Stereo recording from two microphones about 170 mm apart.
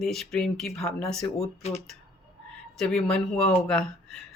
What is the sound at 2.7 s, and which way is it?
Speech, 5° left (ahead or behind).